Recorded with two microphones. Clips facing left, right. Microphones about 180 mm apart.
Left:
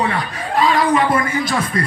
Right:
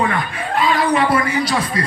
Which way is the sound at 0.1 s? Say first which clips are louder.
Even; 40° left (ahead or behind).